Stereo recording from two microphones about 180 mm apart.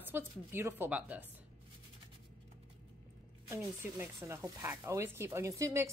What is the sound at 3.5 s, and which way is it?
A woman's voice, 15° right (ahead or behind).